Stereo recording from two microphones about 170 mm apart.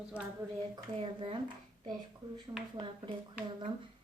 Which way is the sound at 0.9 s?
30° right (ahead or behind).